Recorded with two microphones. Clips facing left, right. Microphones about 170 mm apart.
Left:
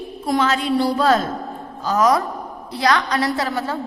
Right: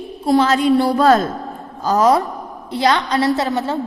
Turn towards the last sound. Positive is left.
turn(degrees=-25)  # may be behind; listen again after turning